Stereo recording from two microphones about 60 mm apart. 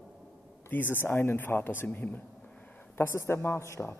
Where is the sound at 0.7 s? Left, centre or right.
Left.